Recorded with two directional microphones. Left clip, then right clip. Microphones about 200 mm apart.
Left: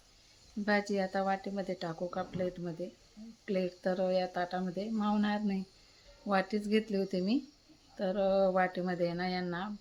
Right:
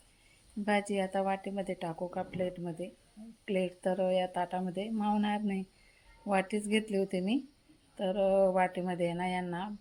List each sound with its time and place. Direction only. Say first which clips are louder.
0.6 s speech: even; 5° right (ahead or behind)